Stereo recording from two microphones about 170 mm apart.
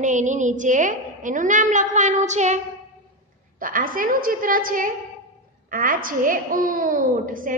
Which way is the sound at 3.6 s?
55° right (ahead or behind).